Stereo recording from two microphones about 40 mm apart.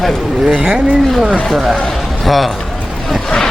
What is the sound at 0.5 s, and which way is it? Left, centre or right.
Speech, right.